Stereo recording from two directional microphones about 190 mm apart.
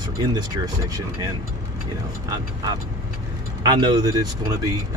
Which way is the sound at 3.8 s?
20° right (ahead or behind).